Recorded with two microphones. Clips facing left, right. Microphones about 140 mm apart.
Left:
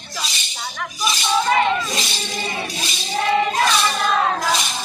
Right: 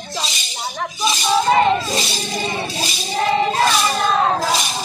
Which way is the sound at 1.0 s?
30° right (ahead or behind).